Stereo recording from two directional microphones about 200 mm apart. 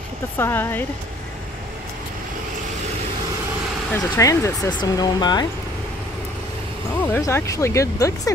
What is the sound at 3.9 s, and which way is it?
Speech, 15° left (ahead or behind).